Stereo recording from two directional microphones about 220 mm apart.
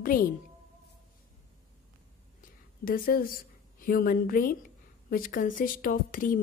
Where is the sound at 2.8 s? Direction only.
40° left (ahead or behind).